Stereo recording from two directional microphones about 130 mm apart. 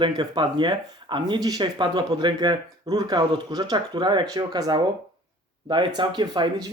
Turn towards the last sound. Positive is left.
turn(degrees=-35)  # may be behind; listen again after turning